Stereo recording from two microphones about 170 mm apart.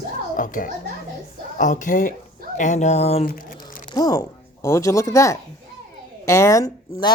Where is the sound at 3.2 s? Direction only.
55° left (ahead or behind).